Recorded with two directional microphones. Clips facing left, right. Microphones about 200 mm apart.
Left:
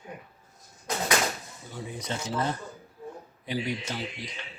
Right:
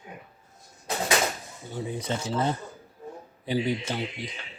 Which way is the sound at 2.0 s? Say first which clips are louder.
Right 1 dB; 25° right (ahead or behind).